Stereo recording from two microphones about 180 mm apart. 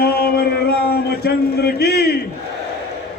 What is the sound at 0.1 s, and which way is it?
Music, 60° left (ahead or behind).